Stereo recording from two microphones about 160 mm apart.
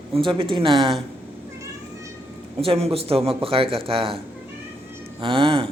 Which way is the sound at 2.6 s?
35° right (ahead or behind).